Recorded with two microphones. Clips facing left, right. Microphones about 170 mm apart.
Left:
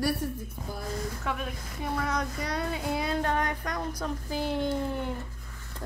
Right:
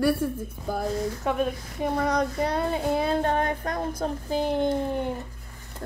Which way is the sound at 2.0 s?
35° right (ahead or behind).